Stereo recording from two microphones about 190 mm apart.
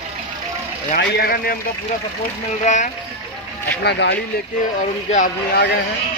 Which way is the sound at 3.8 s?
65° left (ahead or behind).